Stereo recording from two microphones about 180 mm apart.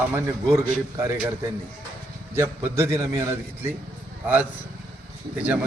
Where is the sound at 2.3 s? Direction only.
15° right (ahead or behind).